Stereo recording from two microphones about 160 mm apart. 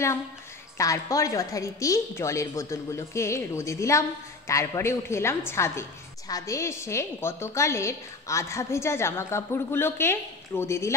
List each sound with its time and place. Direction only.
0.7 s a woman's voice: 20° left (ahead or behind)